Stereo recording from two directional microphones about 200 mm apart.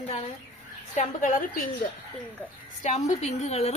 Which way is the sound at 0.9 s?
40° left (ahead or behind).